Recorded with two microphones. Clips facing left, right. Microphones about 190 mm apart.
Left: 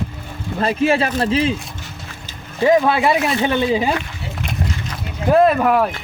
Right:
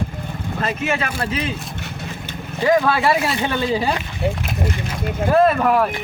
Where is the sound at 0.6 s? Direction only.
30° left (ahead or behind).